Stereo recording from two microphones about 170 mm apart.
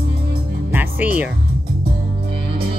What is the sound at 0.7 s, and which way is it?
Music, 10° right (ahead or behind).